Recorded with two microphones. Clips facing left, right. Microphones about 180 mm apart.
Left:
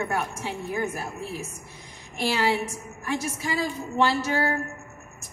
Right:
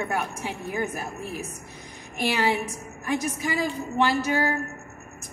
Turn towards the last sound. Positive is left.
turn(degrees=-15)  # may be behind; listen again after turning